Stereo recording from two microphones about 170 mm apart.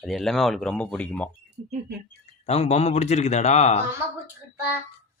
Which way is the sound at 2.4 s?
40° left (ahead or behind).